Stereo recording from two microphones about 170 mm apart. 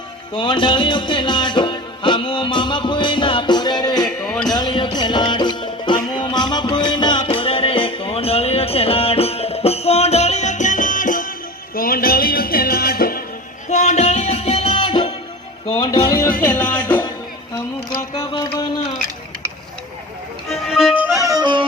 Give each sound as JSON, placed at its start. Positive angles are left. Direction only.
{"t": 0.3, "sound": "music", "side_deg": 30}
{"t": 13.7, "sound": "music", "side_deg": 40}
{"t": 16.5, "sound": "music", "side_deg": 10}
{"t": 18.1, "sound": "a sound", "side_deg": 30}
{"t": 20.5, "sound": "music", "side_deg": 0}
{"t": 21.2, "sound": "music", "side_deg": -25}